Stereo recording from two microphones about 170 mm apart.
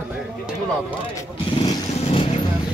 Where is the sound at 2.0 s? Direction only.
30° left (ahead or behind).